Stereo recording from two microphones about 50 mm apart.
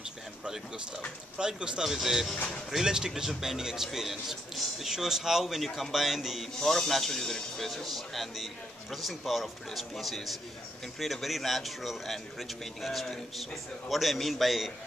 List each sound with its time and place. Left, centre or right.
1.4 s speech: centre
2.0 s a man's voice: centre
6.6 s a man's voice: centre